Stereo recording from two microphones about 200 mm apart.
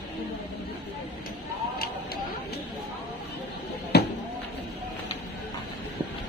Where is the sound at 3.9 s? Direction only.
55° left (ahead or behind).